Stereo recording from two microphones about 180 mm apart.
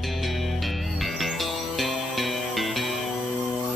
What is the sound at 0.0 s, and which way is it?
Music, centre (ahead or behind).